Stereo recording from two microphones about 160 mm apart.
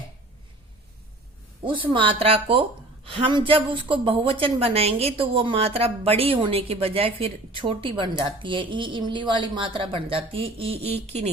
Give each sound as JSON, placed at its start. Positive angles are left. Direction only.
{"t": 1.6, "sound": "a woman's voice", "side_deg": -30}